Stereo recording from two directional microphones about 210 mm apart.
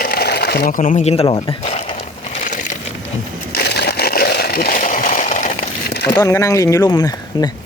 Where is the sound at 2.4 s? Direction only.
35° left (ahead or behind).